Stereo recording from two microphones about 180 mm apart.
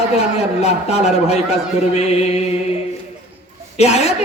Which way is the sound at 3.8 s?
35° left (ahead or behind).